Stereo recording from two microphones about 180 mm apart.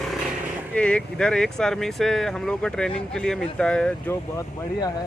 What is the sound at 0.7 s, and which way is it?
Speech, 5° left (ahead or behind).